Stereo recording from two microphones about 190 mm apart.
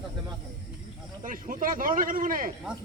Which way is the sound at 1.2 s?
45° right (ahead or behind).